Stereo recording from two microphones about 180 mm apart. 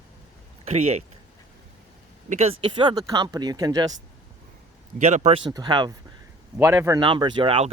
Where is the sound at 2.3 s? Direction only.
35° right (ahead or behind).